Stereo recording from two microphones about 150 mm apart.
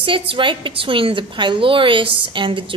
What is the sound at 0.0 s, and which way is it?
Speech, 35° right (ahead or behind).